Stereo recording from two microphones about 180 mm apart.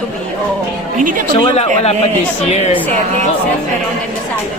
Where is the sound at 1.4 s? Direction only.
35° left (ahead or behind).